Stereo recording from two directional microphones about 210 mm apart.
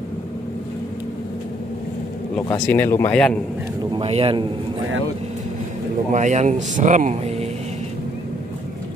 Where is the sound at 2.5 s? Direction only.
15° left (ahead or behind).